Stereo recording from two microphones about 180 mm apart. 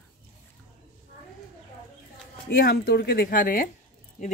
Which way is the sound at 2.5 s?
55° left (ahead or behind).